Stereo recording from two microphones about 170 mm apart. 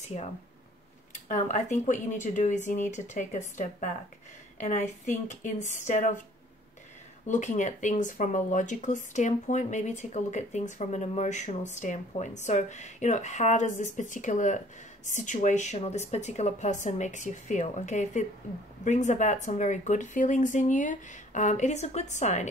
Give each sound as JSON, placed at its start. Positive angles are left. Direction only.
{"t": 0.0, "sound": "speech", "side_deg": 40}
{"t": 1.3, "sound": "speech", "side_deg": 45}
{"t": 7.2, "sound": "speech", "side_deg": 45}